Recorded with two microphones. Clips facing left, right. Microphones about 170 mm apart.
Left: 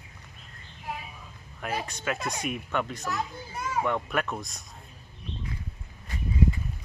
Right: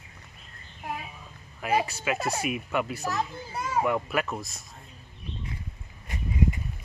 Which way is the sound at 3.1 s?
30° right (ahead or behind).